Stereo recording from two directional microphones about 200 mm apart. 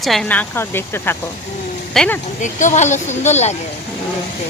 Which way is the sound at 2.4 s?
40° left (ahead or behind).